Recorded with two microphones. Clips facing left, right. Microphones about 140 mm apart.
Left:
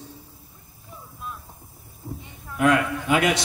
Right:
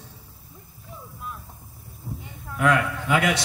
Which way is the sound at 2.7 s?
20° left (ahead or behind).